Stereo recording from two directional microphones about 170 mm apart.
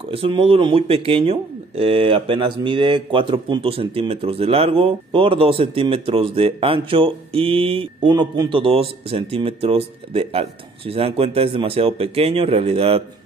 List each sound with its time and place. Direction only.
0.1 s speech: 30° right (ahead or behind)